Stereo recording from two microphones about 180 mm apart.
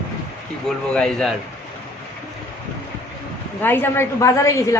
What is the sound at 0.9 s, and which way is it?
Speech, 5° left (ahead or behind).